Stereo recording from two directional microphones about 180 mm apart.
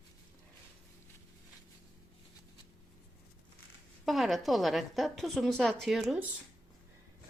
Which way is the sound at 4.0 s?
Centre (ahead or behind).